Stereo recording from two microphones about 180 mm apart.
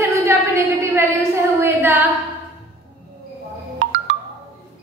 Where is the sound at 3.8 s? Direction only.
90° right.